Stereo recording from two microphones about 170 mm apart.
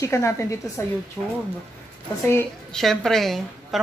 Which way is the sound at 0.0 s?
15° left (ahead or behind).